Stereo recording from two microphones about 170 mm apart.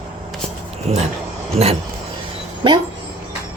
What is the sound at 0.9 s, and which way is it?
Speech, 40° right (ahead or behind).